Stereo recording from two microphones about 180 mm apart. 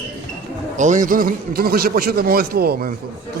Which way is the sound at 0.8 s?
45° right (ahead or behind).